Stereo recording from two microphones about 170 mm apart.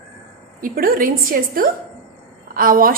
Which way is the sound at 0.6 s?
55° right (ahead or behind).